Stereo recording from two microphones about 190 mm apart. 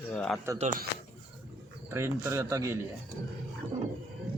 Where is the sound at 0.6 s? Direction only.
45° right (ahead or behind).